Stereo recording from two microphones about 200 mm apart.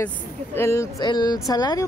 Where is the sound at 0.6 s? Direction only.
15° left (ahead or behind).